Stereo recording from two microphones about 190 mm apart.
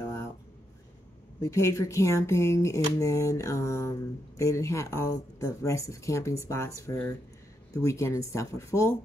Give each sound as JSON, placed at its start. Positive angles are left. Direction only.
{"t": 1.4, "sound": "speech", "side_deg": 15}